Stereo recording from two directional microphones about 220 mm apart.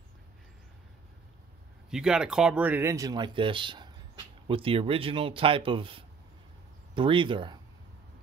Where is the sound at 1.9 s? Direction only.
5° right (ahead or behind).